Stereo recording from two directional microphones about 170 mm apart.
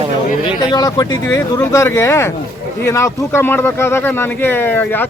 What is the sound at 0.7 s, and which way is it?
Speech, 25° left (ahead or behind).